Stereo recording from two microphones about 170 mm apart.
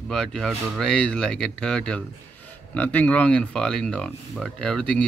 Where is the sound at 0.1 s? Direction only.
5° left (ahead or behind).